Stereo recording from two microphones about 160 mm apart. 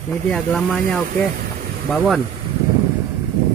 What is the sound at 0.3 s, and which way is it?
Speech, 5° left (ahead or behind).